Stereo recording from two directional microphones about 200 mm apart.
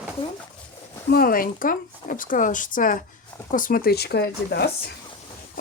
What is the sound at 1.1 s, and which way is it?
Speech, 45° left (ahead or behind).